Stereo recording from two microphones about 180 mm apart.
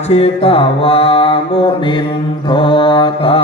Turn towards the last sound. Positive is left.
turn(degrees=30)  # may be behind; listen again after turning